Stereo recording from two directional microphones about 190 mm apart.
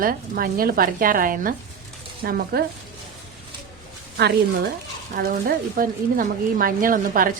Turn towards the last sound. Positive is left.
turn(degrees=-45)  # may be behind; listen again after turning